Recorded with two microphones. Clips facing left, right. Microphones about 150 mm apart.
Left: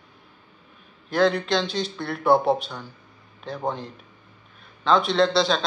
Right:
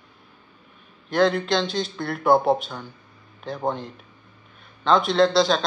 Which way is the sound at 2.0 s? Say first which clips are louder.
Right 1 dB; 10° right (ahead or behind).